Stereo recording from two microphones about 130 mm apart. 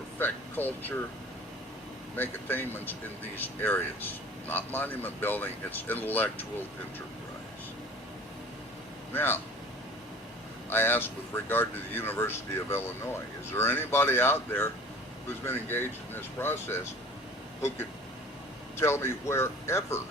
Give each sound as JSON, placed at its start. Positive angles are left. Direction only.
{"t": 0.2, "sound": "speech", "side_deg": 15}
{"t": 2.1, "sound": "speech", "side_deg": 15}
{"t": 9.1, "sound": "speech", "side_deg": 15}
{"t": 10.7, "sound": "speech", "side_deg": 15}
{"t": 18.8, "sound": "speech", "side_deg": 20}